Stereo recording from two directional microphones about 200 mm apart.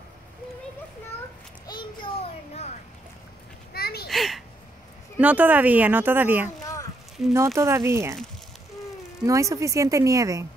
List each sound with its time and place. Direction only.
1.7 s a child's voice: 25° left (ahead or behind)
3.7 s a sound: 50° left (ahead or behind)
4.1 s a child's voice: centre (ahead or behind)
6.6 s a sound: 15° left (ahead or behind)
7.3 s speech: 15° right (ahead or behind)
9.2 s speech: 15° right (ahead or behind)